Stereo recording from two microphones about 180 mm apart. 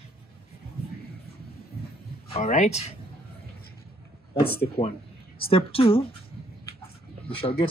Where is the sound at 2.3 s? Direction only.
40° left (ahead or behind).